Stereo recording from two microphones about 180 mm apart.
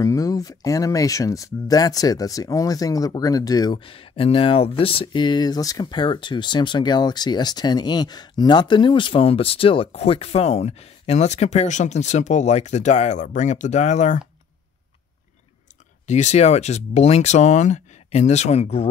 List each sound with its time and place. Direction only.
0.0 s speech: 20° left (ahead or behind); by 14.2 s 40° left (ahead or behind)
16.1 s speech: 40° left (ahead or behind)